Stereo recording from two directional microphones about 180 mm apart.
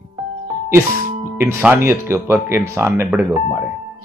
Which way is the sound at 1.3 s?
10° right (ahead or behind).